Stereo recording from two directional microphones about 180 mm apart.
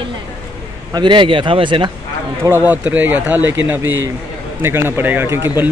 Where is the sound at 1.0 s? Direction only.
25° right (ahead or behind).